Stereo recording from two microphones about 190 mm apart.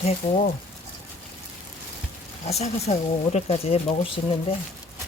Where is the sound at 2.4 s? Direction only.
35° left (ahead or behind).